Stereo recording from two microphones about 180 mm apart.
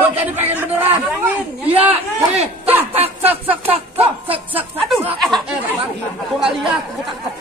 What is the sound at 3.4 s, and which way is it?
A man's voice, 10° right (ahead or behind).